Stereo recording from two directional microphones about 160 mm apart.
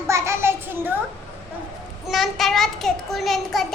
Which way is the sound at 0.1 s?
15° right (ahead or behind).